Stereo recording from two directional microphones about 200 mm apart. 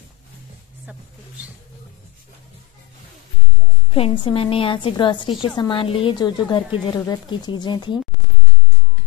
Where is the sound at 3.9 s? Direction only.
30° left (ahead or behind).